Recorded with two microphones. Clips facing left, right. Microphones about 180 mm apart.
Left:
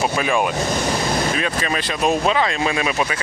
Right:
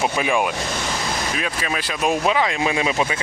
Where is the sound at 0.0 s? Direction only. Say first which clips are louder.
Left 1 dB; 15° right (ahead or behind).